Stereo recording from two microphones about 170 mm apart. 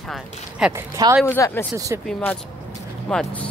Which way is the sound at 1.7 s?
20° right (ahead or behind).